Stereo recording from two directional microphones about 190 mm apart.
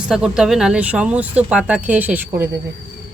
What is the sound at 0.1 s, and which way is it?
Speech, 5° right (ahead or behind).